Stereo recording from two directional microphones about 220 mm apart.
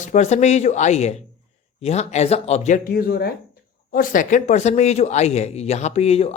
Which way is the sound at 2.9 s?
45° left (ahead or behind).